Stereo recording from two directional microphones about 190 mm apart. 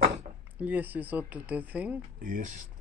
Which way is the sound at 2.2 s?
45° right (ahead or behind).